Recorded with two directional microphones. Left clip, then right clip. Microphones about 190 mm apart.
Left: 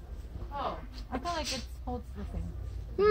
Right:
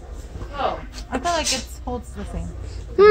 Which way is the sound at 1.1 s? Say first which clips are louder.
Right 12 dB; 55° right (ahead or behind).